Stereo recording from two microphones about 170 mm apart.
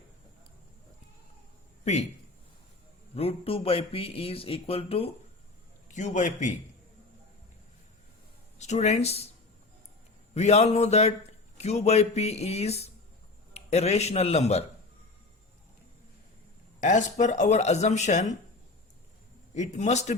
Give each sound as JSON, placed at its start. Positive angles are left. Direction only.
{"t": 1.8, "sound": "a man's voice", "side_deg": 40}
{"t": 3.2, "sound": "speech", "side_deg": 35}
{"t": 5.9, "sound": "speech", "side_deg": 45}
{"t": 8.5, "sound": "speech", "side_deg": 40}
{"t": 10.3, "sound": "a man's voice", "side_deg": 40}
{"t": 16.8, "sound": "speech", "side_deg": 45}
{"t": 19.5, "sound": "speech", "side_deg": 45}